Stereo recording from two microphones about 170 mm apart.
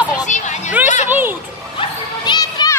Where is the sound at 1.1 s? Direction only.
10° right (ahead or behind).